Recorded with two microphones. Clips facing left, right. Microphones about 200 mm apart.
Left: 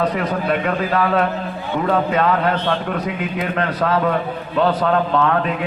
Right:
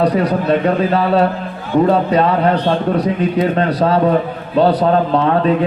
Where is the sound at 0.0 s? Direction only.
35° right (ahead or behind).